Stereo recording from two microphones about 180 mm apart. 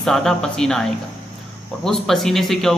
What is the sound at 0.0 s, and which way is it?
A man's voice, centre (ahead or behind).